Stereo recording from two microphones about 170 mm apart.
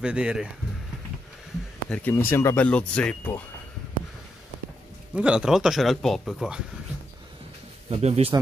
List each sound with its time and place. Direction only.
0.0 s speech: 5° right (ahead or behind)
1.9 s speech: 10° left (ahead or behind)
5.1 s speech: 5° right (ahead or behind)
7.9 s speech: 35° right (ahead or behind)